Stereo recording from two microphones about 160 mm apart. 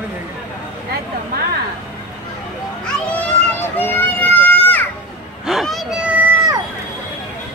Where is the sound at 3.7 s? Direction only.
10° left (ahead or behind).